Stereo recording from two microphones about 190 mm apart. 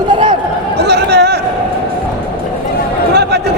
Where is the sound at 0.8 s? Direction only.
60° right (ahead or behind).